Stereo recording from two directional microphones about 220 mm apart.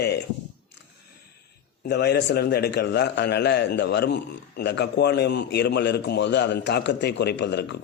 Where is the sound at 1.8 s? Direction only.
50° left (ahead or behind).